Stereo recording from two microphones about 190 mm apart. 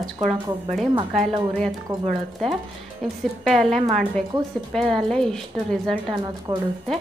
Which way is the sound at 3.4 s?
Centre (ahead or behind).